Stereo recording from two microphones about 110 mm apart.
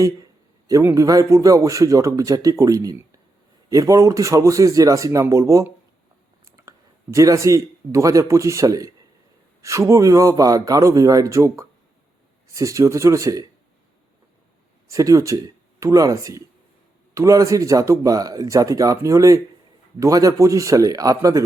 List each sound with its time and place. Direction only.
0.7 s a man's voice: 25° right (ahead or behind)
14.8 s speech: 30° right (ahead or behind)